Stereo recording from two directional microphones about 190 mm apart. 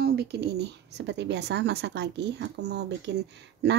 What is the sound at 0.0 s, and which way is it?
Speech, 55° right (ahead or behind).